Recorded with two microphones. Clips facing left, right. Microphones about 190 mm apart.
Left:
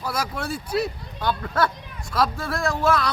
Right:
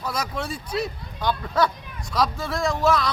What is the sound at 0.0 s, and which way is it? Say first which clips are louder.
Speech: left 1 dB; 5° left (ahead or behind).